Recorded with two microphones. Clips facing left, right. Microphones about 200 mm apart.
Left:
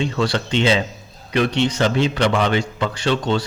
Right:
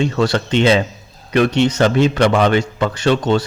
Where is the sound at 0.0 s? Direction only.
50° right (ahead or behind).